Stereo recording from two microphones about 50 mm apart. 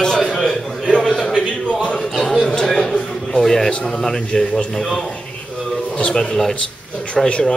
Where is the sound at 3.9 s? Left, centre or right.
Centre.